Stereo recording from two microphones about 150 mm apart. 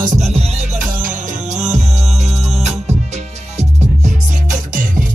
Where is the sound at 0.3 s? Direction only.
45° right (ahead or behind).